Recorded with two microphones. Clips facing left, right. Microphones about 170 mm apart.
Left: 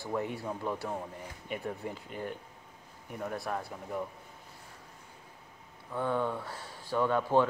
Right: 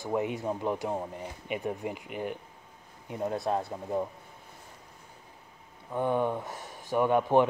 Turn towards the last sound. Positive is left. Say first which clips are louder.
# right 3 dB
turn(degrees=-20)  # may be behind; listen again after turning